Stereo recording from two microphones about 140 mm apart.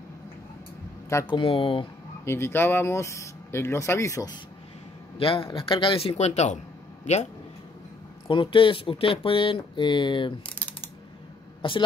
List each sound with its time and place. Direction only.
1.2 s speech: 35° left (ahead or behind)
2.2 s speech: 15° left (ahead or behind)
5.2 s speech: 40° left (ahead or behind)
8.3 s speech: 40° left (ahead or behind)
11.6 s speech: 35° left (ahead or behind)